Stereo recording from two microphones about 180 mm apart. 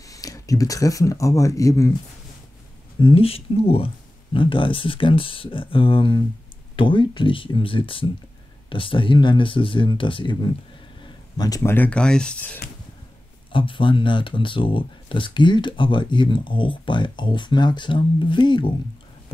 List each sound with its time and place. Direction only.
0.1 s speech: 20° left (ahead or behind)
3.0 s speech: 30° left (ahead or behind); by 12.5 s 5° left (ahead or behind)
13.5 s speech: 30° left (ahead or behind)